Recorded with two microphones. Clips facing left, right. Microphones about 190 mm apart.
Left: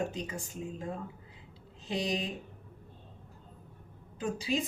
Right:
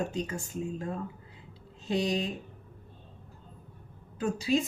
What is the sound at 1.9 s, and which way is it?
Speech, 15° left (ahead or behind).